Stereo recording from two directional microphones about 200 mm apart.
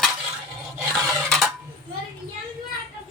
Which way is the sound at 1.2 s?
Centre (ahead or behind).